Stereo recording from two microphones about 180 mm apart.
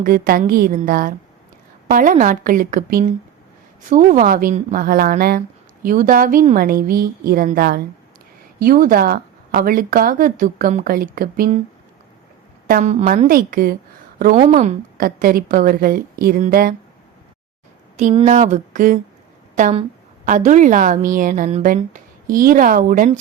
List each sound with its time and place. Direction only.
0.0 s speech: 55° right (ahead or behind)
12.6 s a woman's voice: 45° right (ahead or behind)
13.2 s speech: 50° right (ahead or behind)
18.1 s speech: 35° right (ahead or behind)
20.2 s a woman's voice: 45° right (ahead or behind)